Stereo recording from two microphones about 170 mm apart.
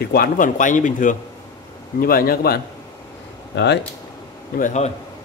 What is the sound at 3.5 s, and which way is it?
Speech, 90° left.